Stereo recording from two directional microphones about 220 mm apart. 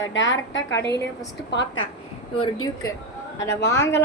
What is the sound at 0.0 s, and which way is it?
Speech, 60° left (ahead or behind).